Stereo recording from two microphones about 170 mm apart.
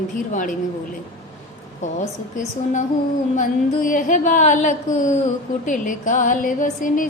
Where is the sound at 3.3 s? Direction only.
50° left (ahead or behind).